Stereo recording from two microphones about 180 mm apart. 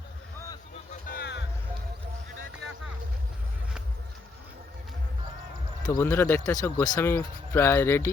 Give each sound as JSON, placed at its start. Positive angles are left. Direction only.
{"t": 1.0, "sound": "music", "side_deg": 60}
{"t": 5.8, "sound": "speech", "side_deg": 20}
{"t": 6.1, "sound": "speech", "side_deg": 10}